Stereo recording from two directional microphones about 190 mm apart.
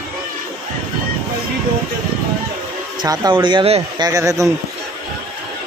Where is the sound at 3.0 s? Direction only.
20° right (ahead or behind).